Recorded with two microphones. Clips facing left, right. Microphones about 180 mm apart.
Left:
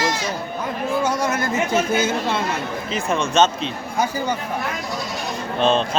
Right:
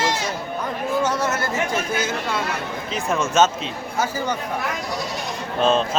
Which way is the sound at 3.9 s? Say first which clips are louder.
Left 1 dB; 15° left (ahead or behind).